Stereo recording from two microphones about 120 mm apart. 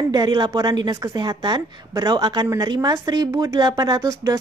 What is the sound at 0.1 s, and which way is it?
A woman's voice, 35° right (ahead or behind).